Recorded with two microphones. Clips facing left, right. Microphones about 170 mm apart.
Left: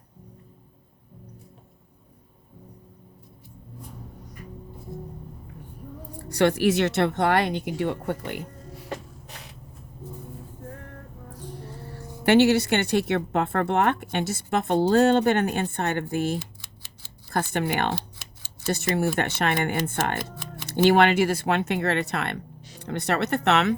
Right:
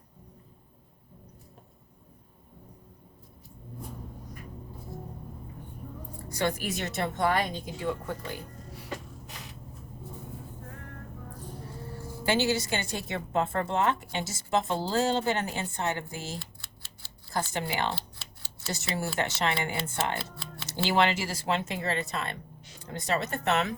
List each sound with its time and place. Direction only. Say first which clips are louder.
6.1 s speech: left 8 dB; 75° left (ahead or behind)
12.2 s speech: left 9 dB; 65° left (ahead or behind)
16.4 s scissors: left 6 dB; 20° left (ahead or behind)
17.5 s speech: left 7 dB; 60° left (ahead or behind)